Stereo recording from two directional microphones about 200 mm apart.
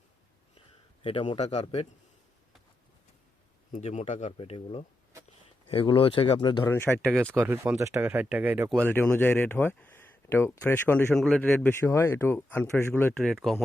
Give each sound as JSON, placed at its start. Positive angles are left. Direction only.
{"t": 1.0, "sound": "speech", "side_deg": 25}
{"t": 3.7, "sound": "speech", "side_deg": 35}
{"t": 6.7, "sound": "speech", "side_deg": 10}
{"t": 7.3, "sound": "speech", "side_deg": -10}
{"t": 8.7, "sound": "speech", "side_deg": 10}